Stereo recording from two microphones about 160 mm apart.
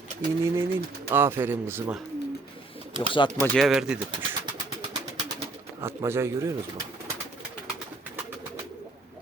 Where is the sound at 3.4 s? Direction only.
5° left (ahead or behind).